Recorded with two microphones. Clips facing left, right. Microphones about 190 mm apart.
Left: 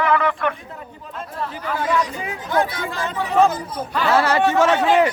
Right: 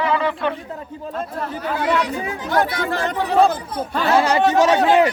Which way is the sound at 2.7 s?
65° right (ahead or behind).